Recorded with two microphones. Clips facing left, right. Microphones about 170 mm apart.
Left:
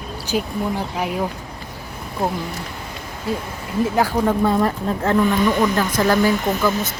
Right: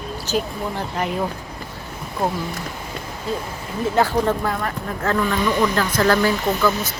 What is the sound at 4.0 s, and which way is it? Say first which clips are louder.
Speech: right 1 dB; 10° left (ahead or behind).